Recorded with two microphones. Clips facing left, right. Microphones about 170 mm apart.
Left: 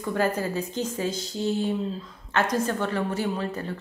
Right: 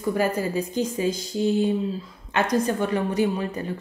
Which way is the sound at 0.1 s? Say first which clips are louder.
Right 2 dB; 10° right (ahead or behind).